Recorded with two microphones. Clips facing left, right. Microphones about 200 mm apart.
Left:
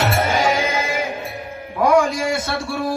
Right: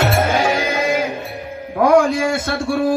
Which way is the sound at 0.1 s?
50° right (ahead or behind).